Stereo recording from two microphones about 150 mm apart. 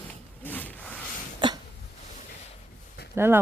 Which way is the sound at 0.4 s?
10° left (ahead or behind).